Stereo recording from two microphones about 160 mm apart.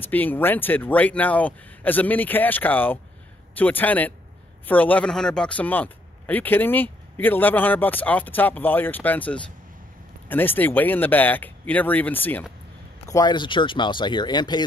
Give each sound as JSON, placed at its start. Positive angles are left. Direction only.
{"t": 0.0, "sound": "speech", "side_deg": 10}
{"t": 13.1, "sound": "speech", "side_deg": 25}